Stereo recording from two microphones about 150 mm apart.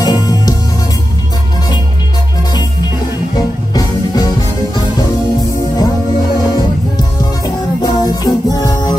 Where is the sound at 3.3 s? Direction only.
25° left (ahead or behind).